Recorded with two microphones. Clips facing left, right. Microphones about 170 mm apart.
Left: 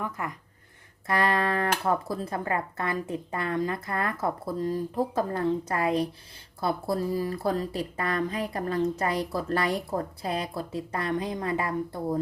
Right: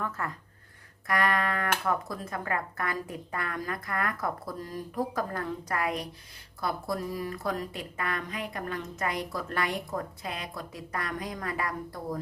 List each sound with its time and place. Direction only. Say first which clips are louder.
0.2 s speech: left 1 dB; 15° left (ahead or behind)
1.0 s speech: left 3 dB; 30° left (ahead or behind)